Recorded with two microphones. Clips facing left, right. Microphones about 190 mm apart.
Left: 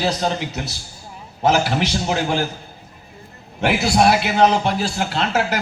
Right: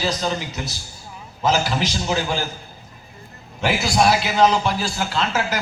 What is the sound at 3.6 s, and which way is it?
A man's voice, 65° left (ahead or behind).